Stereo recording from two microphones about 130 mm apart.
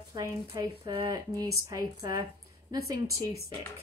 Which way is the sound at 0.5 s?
40° right (ahead or behind).